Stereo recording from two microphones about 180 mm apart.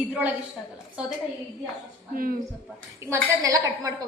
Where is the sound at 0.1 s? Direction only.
10° right (ahead or behind).